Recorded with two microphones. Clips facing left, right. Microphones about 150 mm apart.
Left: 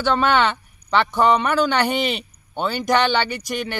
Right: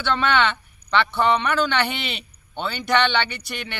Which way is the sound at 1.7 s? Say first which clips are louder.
Left 5 dB; 40° left (ahead or behind).